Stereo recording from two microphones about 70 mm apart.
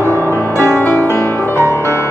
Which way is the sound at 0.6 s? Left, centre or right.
Left.